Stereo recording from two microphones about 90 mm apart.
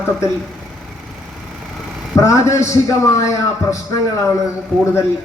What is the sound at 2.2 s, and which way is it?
A man's voice, 35° left (ahead or behind).